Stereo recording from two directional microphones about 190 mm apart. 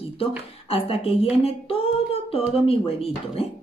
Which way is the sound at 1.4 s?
30° left (ahead or behind).